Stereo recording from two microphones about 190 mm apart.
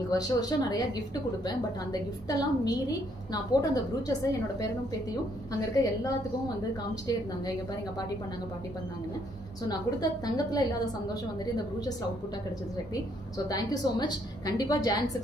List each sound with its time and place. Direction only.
0.1 s a woman's voice: 20° left (ahead or behind)
3.7 s a woman's voice: 20° left (ahead or behind)
9.7 s a woman's voice: 20° left (ahead or behind)
13.5 s a woman's voice: 20° left (ahead or behind)